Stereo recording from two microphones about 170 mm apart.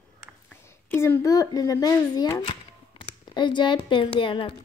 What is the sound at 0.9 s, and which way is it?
Speech, 15° left (ahead or behind).